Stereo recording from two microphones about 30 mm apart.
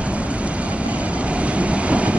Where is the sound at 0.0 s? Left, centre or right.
Right.